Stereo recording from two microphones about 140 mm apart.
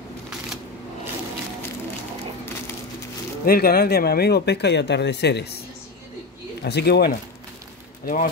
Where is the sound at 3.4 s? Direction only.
90° left.